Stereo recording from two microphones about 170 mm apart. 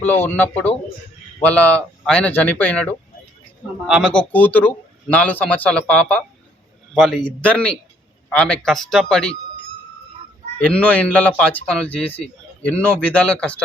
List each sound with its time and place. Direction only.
0.0 s speech: 10° left (ahead or behind)
10.6 s speech: 10° left (ahead or behind)